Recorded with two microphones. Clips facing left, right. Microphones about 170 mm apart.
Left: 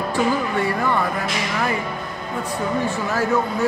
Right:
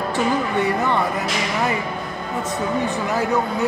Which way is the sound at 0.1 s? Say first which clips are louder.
Even; 20° right (ahead or behind).